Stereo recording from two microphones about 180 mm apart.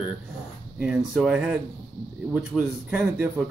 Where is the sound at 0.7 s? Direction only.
5° right (ahead or behind).